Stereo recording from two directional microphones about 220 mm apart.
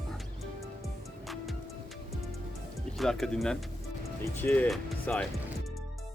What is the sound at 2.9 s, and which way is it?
Speech, centre (ahead or behind).